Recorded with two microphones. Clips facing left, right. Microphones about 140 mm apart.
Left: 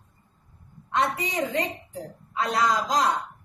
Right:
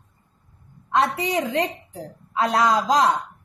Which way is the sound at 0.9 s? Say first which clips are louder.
Right 4 dB; 90° right.